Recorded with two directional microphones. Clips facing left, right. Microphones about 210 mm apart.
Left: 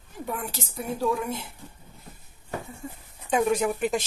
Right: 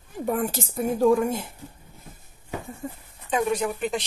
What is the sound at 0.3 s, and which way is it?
A woman's voice, 45° right (ahead or behind).